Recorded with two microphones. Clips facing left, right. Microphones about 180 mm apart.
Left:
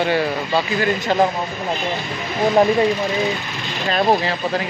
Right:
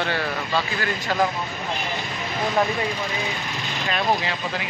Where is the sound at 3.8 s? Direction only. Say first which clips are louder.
Left 6 dB; 35° left (ahead or behind).